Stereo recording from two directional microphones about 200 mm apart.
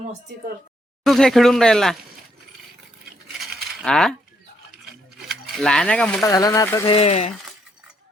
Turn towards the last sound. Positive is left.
turn(degrees=30)  # may be behind; listen again after turning